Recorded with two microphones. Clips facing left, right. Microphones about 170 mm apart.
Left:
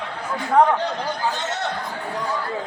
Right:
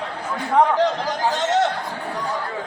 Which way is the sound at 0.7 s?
90° right.